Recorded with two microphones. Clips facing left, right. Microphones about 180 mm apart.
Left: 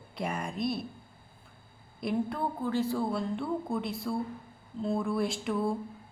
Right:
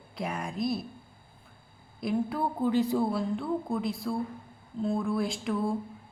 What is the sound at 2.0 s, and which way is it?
Speech, centre (ahead or behind).